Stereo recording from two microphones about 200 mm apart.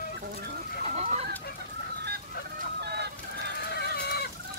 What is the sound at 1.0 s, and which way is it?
Chicken, 35° right (ahead or behind).